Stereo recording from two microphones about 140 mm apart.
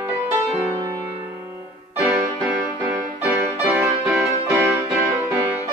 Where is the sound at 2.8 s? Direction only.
15° right (ahead or behind).